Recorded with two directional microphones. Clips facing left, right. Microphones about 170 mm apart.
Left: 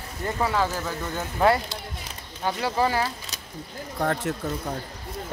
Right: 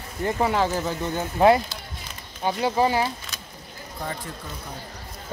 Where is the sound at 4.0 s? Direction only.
65° left (ahead or behind).